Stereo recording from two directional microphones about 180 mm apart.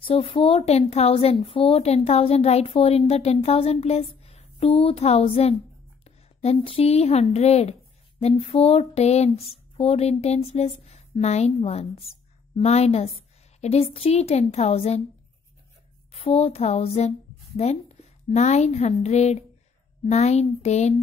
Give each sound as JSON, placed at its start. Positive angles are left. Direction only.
{"t": 0.0, "sound": "a woman's voice", "side_deg": 30}
{"t": 16.1, "sound": "a woman's voice", "side_deg": 35}